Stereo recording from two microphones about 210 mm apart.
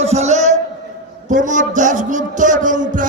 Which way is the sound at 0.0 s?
30° right (ahead or behind).